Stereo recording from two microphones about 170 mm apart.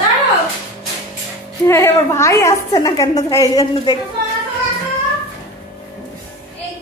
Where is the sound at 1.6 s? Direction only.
15° left (ahead or behind).